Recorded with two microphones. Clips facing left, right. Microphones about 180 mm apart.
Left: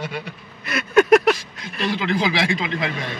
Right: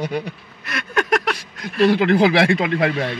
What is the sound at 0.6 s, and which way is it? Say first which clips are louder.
Vehicle: left 6 dB; 5° left (ahead or behind).